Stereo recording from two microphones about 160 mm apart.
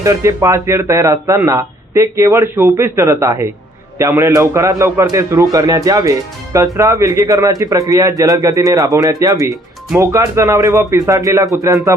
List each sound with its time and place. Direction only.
0.0 s a man's voice: 20° right (ahead or behind)